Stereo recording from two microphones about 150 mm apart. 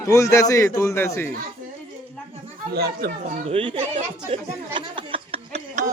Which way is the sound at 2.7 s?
90° right.